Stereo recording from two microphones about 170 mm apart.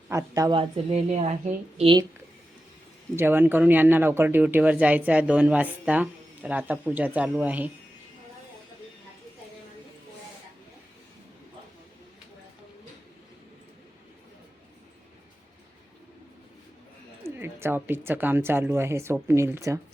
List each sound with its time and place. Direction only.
0.1 s a woman's voice: 20° right (ahead or behind)
0.5 s a woman's voice: 35° right (ahead or behind)
3.2 s speech: 10° right (ahead or behind)
17.2 s speech: 15° right (ahead or behind)